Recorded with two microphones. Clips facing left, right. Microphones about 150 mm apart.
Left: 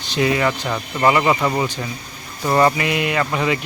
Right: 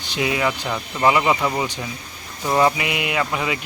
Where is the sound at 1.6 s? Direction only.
15° right (ahead or behind).